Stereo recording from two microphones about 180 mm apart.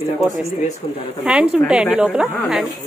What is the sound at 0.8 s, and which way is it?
Speech, 30° left (ahead or behind).